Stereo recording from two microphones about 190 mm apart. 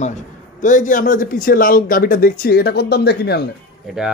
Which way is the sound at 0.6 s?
40° left (ahead or behind).